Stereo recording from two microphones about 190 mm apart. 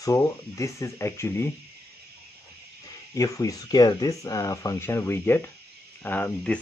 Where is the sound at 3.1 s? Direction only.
15° left (ahead or behind).